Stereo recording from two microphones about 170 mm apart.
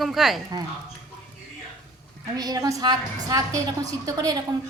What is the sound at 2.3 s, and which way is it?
A woman's voice, 20° right (ahead or behind).